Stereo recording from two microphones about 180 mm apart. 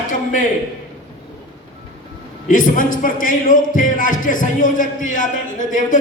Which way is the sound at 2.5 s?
50° left (ahead or behind).